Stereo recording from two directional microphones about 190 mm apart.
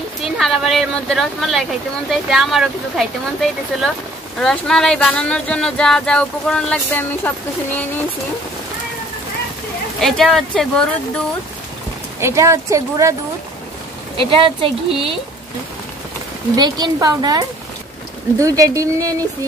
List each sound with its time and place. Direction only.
0.2 s speech: centre (ahead or behind)
9.9 s speech: centre (ahead or behind)
12.2 s a woman's voice: 15° right (ahead or behind)
14.1 s speech: 30° right (ahead or behind)
16.5 s a woman's voice: 20° right (ahead or behind)